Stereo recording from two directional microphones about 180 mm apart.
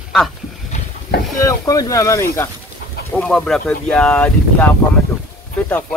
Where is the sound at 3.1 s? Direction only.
5° left (ahead or behind).